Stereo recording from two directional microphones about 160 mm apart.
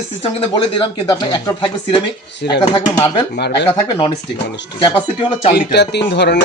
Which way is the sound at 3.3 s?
90° left.